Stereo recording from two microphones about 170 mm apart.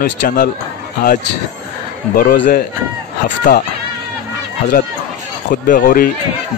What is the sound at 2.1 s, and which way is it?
Speech, 60° left (ahead or behind).